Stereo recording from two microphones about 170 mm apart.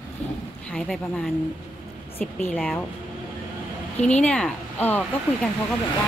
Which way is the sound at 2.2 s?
45° left (ahead or behind).